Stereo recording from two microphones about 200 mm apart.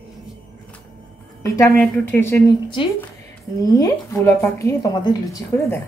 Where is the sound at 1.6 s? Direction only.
5° left (ahead or behind).